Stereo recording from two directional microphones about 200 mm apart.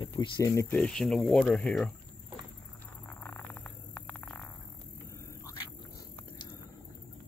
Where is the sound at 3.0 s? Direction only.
10° left (ahead or behind).